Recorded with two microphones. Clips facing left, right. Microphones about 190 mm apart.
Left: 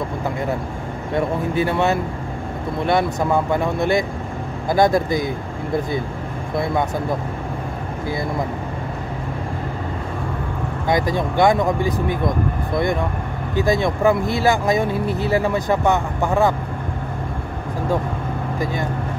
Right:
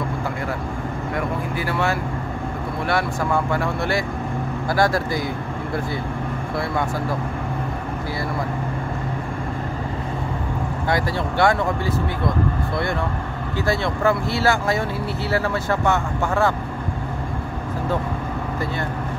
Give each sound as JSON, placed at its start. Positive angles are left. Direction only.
{"t": 1.1, "sound": "speech", "side_deg": 25}
{"t": 6.5, "sound": "speech", "side_deg": 20}
{"t": 10.9, "sound": "speech", "side_deg": 15}